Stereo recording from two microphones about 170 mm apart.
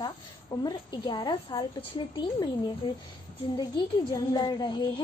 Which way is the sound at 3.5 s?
25° left (ahead or behind).